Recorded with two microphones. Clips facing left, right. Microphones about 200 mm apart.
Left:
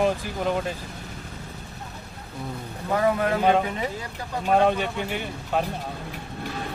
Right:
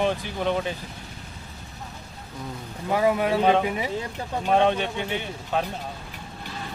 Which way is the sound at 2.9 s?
15° right (ahead or behind).